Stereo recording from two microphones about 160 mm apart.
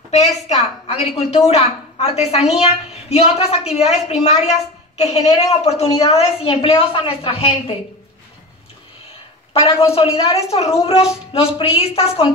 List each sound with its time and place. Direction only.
0.1 s a woman's voice: 45° left (ahead or behind)
9.5 s a woman's voice: 35° left (ahead or behind)